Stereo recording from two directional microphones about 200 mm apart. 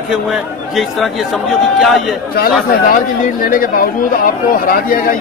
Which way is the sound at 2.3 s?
45° left (ahead or behind).